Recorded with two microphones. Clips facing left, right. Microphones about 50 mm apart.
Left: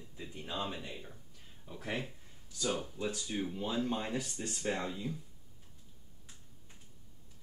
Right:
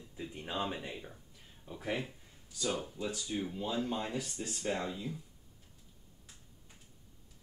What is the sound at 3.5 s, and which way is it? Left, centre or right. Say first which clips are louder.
Speech: left 1 dB; centre.